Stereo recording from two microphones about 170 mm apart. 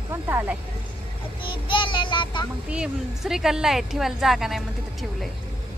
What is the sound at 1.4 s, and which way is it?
Child singing, 30° left (ahead or behind).